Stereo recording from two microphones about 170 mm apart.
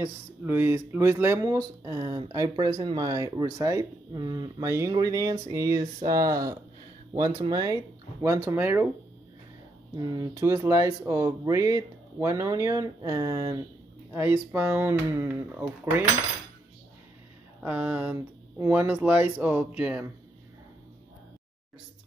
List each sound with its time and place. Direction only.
0.0 s speech: 15° right (ahead or behind)
9.9 s speech: 20° right (ahead or behind)
17.6 s speech: 10° right (ahead or behind)